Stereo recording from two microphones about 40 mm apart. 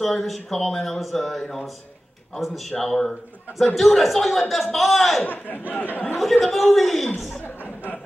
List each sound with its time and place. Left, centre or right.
0.0 s a man's voice: centre
5.7 s speech: left
6.4 s a man's voice: centre